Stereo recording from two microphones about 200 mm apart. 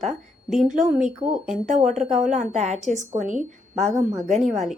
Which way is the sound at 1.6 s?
40° right (ahead or behind).